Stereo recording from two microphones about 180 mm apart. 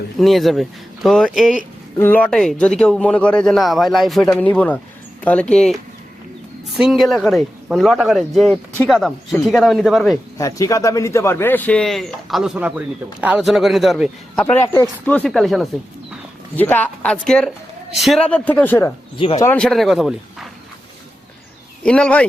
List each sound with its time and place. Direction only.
0.2 s a man's voice: centre (ahead or behind)
6.7 s a man's voice: centre (ahead or behind)
10.3 s a man's voice: 20° left (ahead or behind); by 14.4 s centre (ahead or behind)
14.4 s speech: 10° left (ahead or behind)
19.1 s speech: 30° left (ahead or behind)
19.5 s a man's voice: 5° left (ahead or behind)
21.8 s a man's voice: 5° left (ahead or behind)